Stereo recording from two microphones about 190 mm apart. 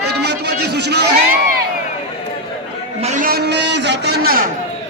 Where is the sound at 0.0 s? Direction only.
60° right (ahead or behind).